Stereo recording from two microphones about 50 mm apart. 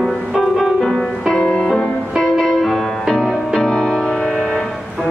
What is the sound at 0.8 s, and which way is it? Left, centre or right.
Music, centre.